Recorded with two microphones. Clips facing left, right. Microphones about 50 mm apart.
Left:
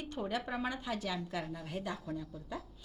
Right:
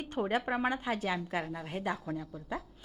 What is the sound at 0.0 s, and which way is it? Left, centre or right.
A woman's voice, right.